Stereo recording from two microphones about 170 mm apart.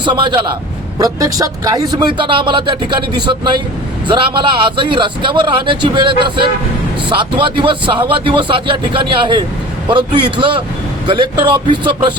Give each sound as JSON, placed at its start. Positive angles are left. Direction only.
{"t": 0.0, "sound": "a man's voice", "side_deg": -25}